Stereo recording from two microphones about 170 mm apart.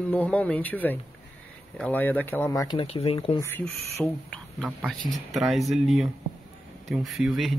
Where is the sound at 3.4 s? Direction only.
15° left (ahead or behind).